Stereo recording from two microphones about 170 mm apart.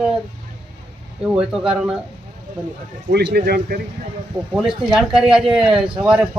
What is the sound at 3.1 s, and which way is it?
Speech, 70° right (ahead or behind).